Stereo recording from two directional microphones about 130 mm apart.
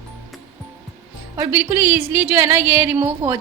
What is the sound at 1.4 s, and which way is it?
Speech, 15° right (ahead or behind).